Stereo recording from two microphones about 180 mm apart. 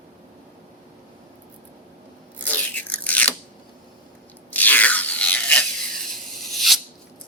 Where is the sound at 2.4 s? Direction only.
10° left (ahead or behind).